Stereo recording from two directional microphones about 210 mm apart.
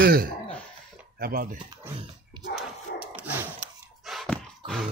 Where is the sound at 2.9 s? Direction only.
50° left (ahead or behind).